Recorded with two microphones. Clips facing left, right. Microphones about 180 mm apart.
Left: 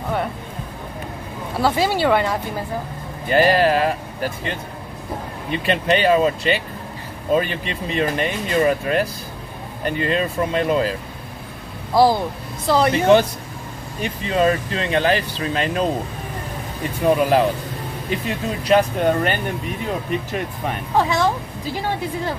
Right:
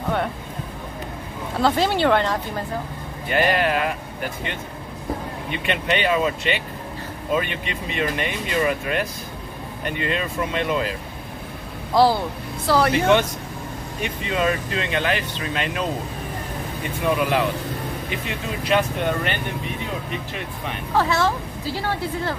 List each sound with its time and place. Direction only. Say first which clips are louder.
1.6 s a woman's voice: left 1 dB; 5° left (ahead or behind)
3.3 s speech: left 5 dB; 35° left (ahead or behind)
11.9 s a woman's voice: left 2 dB; 15° left (ahead or behind)
13.0 s speech: left 4 dB; 35° left (ahead or behind)
17.0 s speech: left 5 dB; 40° left (ahead or behind)
20.3 s speech: left 5 dB; 45° left (ahead or behind)
20.9 s a woman's voice: left 1 dB; 15° left (ahead or behind)